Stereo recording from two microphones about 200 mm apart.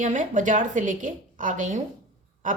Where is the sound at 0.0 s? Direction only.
40° right (ahead or behind).